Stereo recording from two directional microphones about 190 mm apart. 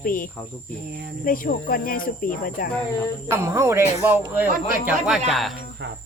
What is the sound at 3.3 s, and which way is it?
A woman's voice, 15° right (ahead or behind).